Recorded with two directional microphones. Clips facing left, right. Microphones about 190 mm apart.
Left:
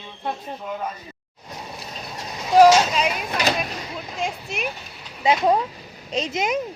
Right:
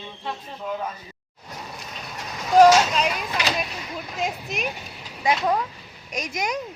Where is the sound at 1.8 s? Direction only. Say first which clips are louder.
Left 2 dB; 30° left (ahead or behind).